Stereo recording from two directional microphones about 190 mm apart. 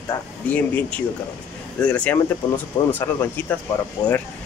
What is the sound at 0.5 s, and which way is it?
Speech, 5° left (ahead or behind).